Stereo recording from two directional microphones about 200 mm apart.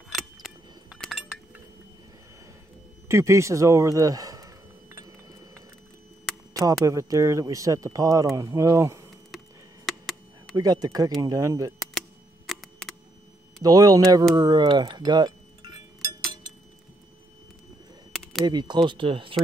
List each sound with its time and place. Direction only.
0.1 s a sound: centre (ahead or behind)
3.1 s a sound: 15° right (ahead or behind)
6.6 s speech: 15° right (ahead or behind)
10.5 s speech: 20° right (ahead or behind)
12.4 s camera: centre (ahead or behind)
13.6 s speech: 20° right (ahead or behind)
14.3 s chink: 20° right (ahead or behind)
18.1 s a sound: centre (ahead or behind)
18.4 s speech: 20° right (ahead or behind)